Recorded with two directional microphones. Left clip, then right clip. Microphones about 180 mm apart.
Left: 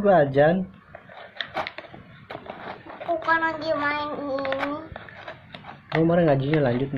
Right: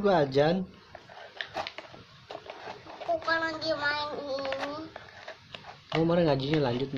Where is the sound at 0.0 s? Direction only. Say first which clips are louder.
Left 7 dB; 20° right (ahead or behind).